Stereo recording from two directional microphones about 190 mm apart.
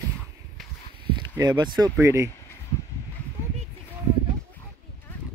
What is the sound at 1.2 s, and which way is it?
Speech, 20° right (ahead or behind).